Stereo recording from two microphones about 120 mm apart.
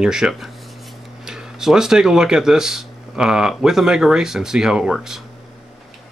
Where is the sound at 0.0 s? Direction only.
5° right (ahead or behind).